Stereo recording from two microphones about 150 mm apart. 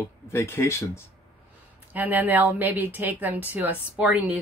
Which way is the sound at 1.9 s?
10° right (ahead or behind).